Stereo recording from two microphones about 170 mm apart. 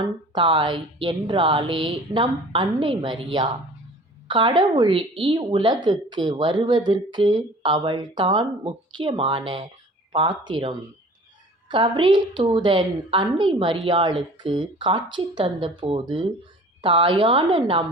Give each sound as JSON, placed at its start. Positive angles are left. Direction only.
{"t": 0.0, "sound": "speech", "side_deg": -30}